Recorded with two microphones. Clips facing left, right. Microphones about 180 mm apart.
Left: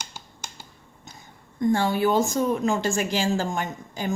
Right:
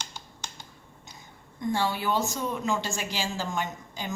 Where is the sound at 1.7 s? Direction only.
50° left (ahead or behind).